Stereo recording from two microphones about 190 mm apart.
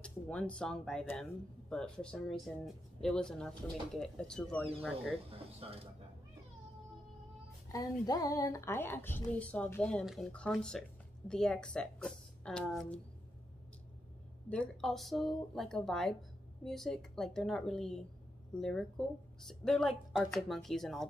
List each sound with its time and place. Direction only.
0.0 s speech: 5° left (ahead or behind)
5.6 s speech: 30° right (ahead or behind)
7.7 s a woman's voice: 20° left (ahead or behind)
14.5 s speech: 5° left (ahead or behind)